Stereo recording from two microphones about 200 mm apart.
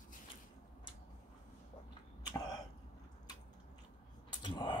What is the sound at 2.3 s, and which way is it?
Cough, 20° left (ahead or behind).